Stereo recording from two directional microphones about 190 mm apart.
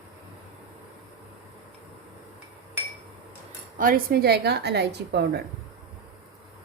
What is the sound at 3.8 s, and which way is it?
A woman's voice, 50° right (ahead or behind).